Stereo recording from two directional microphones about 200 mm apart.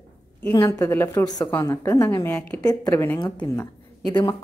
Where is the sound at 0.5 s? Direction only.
15° left (ahead or behind).